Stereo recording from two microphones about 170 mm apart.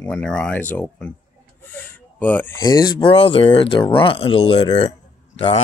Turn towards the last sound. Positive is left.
turn(degrees=35)  # may be behind; listen again after turning